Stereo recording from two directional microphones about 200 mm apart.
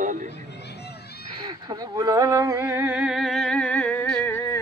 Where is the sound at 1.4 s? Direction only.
20° right (ahead or behind).